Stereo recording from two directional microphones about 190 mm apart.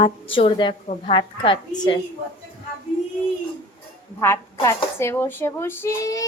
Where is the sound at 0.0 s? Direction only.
30° left (ahead or behind).